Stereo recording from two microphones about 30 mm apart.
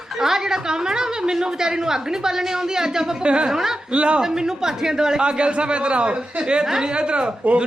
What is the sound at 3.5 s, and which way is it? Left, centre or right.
Speech, centre.